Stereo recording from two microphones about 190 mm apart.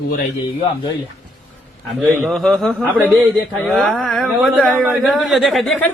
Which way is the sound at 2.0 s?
Centre (ahead or behind).